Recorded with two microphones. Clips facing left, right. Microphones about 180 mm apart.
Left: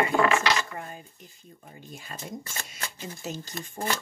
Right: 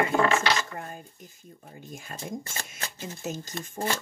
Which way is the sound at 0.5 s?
45° right (ahead or behind).